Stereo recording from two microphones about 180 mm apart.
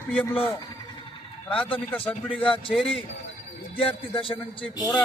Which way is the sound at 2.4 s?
30° left (ahead or behind).